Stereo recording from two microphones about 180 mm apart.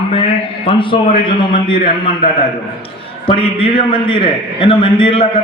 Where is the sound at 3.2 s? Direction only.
30° left (ahead or behind).